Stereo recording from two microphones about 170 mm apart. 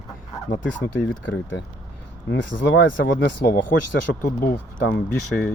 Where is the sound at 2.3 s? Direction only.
90° left; by 3.7 s 55° left (ahead or behind).